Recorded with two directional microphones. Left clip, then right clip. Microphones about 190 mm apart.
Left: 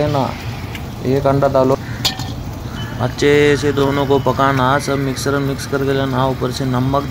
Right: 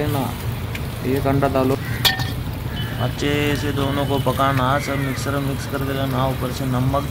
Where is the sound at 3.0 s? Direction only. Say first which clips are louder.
Left 10 dB; 20° left (ahead or behind).